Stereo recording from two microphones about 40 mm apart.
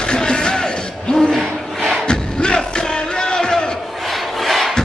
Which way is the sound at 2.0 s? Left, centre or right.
Left.